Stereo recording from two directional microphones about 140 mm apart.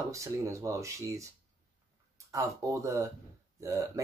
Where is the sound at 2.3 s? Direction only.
25° right (ahead or behind).